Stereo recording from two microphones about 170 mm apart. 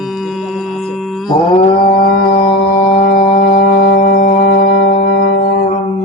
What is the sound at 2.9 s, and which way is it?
Music, 45° left (ahead or behind).